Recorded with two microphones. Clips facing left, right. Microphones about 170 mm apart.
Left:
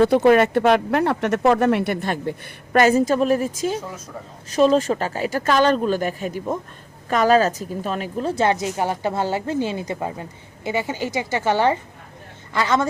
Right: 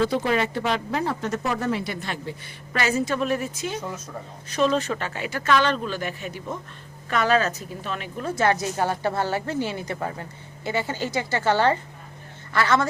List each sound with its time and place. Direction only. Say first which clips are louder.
0.0 s a woman's voice: left 8 dB; 60° left (ahead or behind); by 8.5 s 25° left (ahead or behind)
8.6 s speech: left 2 dB; 15° left (ahead or behind)